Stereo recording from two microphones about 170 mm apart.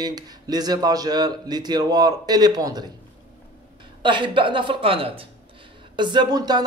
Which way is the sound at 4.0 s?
30° right (ahead or behind).